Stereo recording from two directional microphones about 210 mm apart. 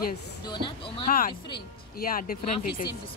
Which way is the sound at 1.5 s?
45° left (ahead or behind).